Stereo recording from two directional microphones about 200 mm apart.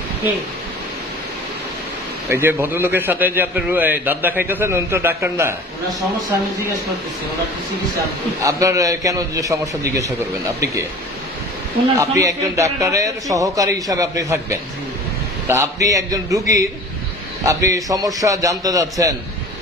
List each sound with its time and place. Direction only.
2.2 s a man's voice: 10° right (ahead or behind)
8.4 s a man's voice: 15° right (ahead or behind)
12.0 s a man's voice: 15° right (ahead or behind)